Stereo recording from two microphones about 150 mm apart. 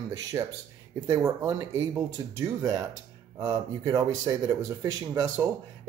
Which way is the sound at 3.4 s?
20° right (ahead or behind).